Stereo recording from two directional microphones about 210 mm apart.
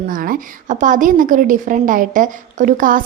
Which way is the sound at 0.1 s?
40° right (ahead or behind).